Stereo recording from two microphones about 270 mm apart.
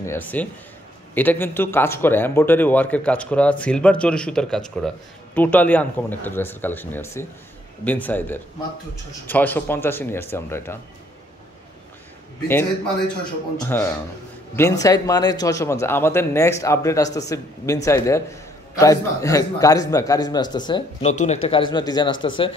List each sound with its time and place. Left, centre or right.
0.0 s speech: centre
13.6 s speech: centre